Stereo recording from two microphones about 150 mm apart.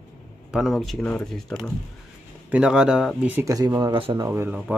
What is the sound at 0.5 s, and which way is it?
Speech, centre (ahead or behind).